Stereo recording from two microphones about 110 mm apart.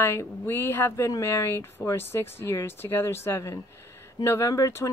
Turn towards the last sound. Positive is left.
turn(degrees=25)  # may be behind; listen again after turning